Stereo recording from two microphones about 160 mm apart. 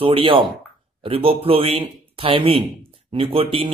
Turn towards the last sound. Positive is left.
turn(degrees=-35)  # may be behind; listen again after turning